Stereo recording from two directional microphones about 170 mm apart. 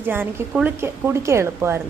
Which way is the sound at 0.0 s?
10° right (ahead or behind).